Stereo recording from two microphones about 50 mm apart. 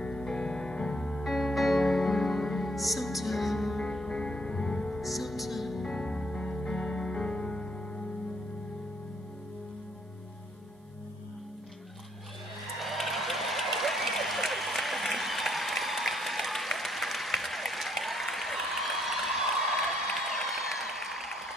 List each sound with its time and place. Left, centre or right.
0.0 s music: centre
1.2 s music: centre
5.0 s music: centre
5.9 s music: centre
12.8 s run: centre
20.2 s applause: centre